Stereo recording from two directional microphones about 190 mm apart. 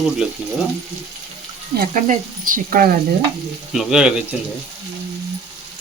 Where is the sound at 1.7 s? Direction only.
45° right (ahead or behind).